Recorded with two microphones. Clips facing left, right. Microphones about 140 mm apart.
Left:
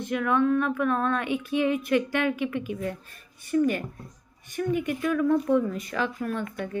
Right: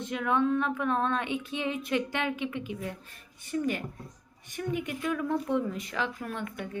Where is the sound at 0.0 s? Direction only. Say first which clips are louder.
Left 4 dB; 20° right (ahead or behind).